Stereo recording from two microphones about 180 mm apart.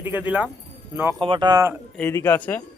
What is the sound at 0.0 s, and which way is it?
Speech, 10° right (ahead or behind).